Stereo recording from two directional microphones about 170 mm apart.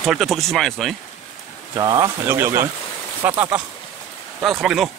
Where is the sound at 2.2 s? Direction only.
15° right (ahead or behind).